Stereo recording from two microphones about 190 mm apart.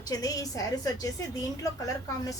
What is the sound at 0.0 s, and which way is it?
A woman's voice, 20° left (ahead or behind).